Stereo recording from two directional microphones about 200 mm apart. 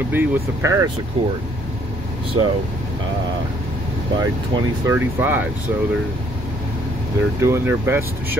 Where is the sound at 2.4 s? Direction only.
20° right (ahead or behind).